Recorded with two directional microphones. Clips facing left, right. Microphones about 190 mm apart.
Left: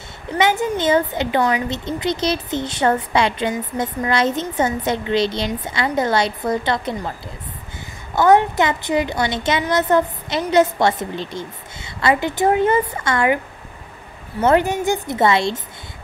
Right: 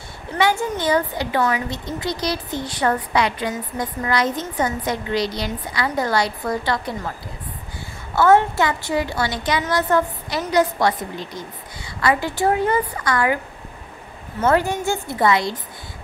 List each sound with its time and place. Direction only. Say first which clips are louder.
0.4 s a woman's voice: left 2 dB; 20° left (ahead or behind)
8.1 s a woman's voice: left 1 dB; 15° left (ahead or behind)
14.4 s a woman's voice: left 3 dB; 20° left (ahead or behind)